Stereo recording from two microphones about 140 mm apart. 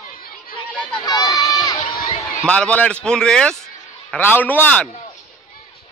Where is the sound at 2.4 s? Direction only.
10° left (ahead or behind).